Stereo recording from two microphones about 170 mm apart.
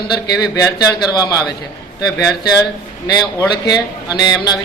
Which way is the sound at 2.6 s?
25° left (ahead or behind).